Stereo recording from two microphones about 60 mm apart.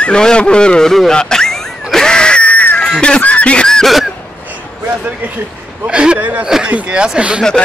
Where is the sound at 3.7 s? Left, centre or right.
Centre.